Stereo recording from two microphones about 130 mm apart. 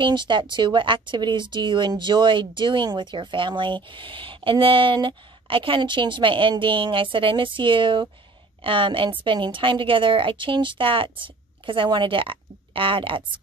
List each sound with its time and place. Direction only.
0.0 s speech: 35° right (ahead or behind)